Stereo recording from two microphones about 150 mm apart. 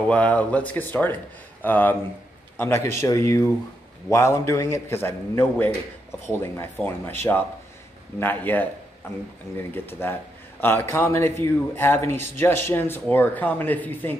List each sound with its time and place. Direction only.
0.1 s a man's voice: 10° left (ahead or behind)
8.2 s a man's voice: 10° left (ahead or behind)